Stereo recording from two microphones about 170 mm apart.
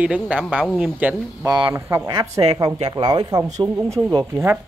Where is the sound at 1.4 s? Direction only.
25° right (ahead or behind).